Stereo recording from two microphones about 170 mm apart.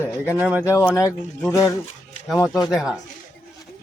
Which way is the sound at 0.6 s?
15° left (ahead or behind).